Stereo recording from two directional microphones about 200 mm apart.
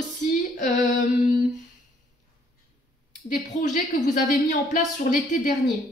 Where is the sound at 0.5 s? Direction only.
40° left (ahead or behind).